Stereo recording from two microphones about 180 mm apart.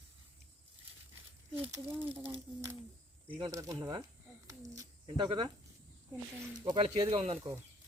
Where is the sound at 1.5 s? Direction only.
10° right (ahead or behind).